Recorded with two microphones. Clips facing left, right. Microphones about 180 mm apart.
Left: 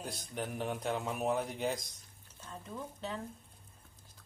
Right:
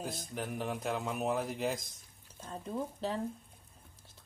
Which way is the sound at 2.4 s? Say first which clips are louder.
Right 6 dB; 35° right (ahead or behind).